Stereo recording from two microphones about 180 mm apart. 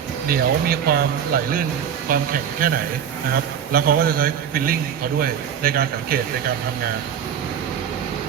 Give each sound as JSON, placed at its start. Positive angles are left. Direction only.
{"t": 0.3, "sound": "a man's voice", "side_deg": -55}